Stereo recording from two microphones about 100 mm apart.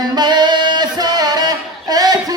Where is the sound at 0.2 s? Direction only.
45° right (ahead or behind).